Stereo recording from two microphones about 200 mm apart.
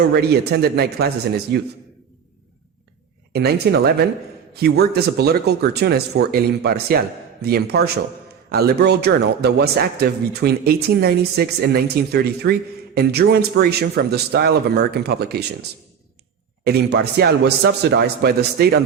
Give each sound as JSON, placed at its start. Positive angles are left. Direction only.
{"t": 0.1, "sound": "speech", "side_deg": -55}
{"t": 3.3, "sound": "speech", "side_deg": -55}
{"t": 16.6, "sound": "speech", "side_deg": -55}